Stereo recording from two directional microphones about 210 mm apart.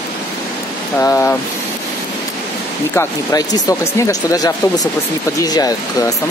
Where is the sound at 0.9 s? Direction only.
10° left (ahead or behind).